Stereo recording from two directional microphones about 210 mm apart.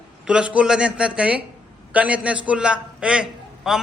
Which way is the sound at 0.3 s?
5° right (ahead or behind).